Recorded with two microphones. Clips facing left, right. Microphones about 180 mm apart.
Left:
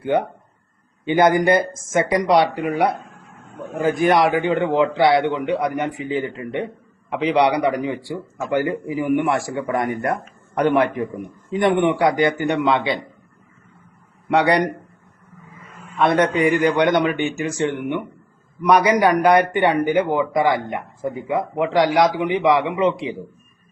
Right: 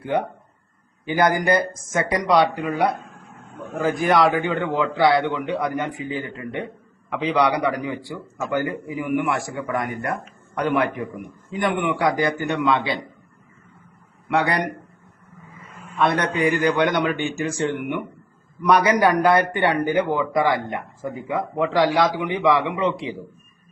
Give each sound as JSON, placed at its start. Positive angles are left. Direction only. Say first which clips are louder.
{"t": 0.0, "sound": "speech", "louder": "left 3 dB", "side_deg": 25}
{"t": 14.3, "sound": "speech", "louder": "left 5 dB", "side_deg": 30}
{"t": 15.8, "sound": "speech", "louder": "left 4 dB", "side_deg": 25}